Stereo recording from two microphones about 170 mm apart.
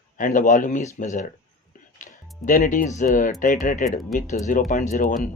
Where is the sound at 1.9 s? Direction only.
50° left (ahead or behind).